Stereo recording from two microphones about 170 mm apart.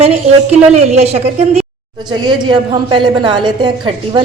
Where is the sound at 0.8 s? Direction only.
40° right (ahead or behind).